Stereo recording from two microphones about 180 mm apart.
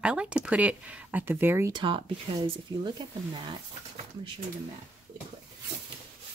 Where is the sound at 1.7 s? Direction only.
25° right (ahead or behind).